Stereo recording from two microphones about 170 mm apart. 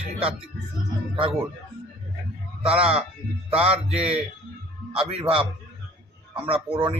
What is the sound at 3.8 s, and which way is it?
Speech, 35° right (ahead or behind).